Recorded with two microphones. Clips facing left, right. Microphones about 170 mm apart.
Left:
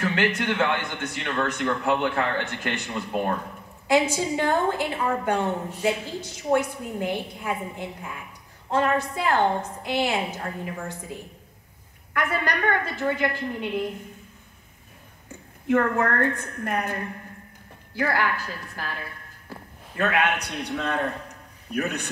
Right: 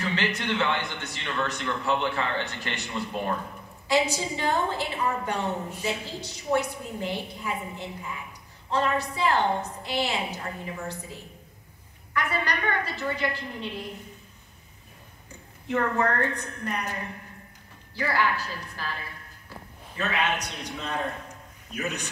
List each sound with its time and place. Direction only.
0.0 s a man's voice: 50° left (ahead or behind)
8.6 s a man's voice: 50° left (ahead or behind)
12.1 s a man's voice: 50° left (ahead or behind)
15.7 s a man's voice: 50° left (ahead or behind)
19.5 s a sound: 50° left (ahead or behind)
20.0 s a man's voice: 55° left (ahead or behind)